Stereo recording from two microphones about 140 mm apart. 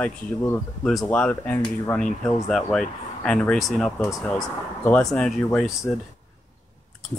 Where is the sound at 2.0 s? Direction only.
5° left (ahead or behind).